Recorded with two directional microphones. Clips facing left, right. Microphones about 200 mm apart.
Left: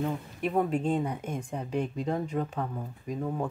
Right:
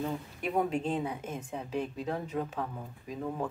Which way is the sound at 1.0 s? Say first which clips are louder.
Left 3 dB; 5° right (ahead or behind).